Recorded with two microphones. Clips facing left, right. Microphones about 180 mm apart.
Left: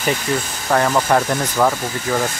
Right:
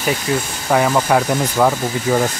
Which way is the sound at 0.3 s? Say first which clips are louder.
Right 3 dB; 5° right (ahead or behind).